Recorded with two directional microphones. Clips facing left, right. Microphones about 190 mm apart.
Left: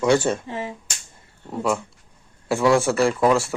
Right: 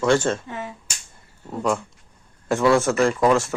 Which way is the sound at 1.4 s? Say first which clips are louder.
Even; 5° left (ahead or behind).